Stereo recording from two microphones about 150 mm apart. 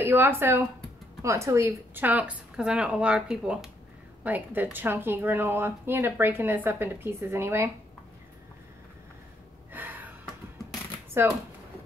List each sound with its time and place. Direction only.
0.0 s speech: 15° right (ahead or behind)
9.7 s gasp: 10° right (ahead or behind)
11.2 s speech: 15° right (ahead or behind)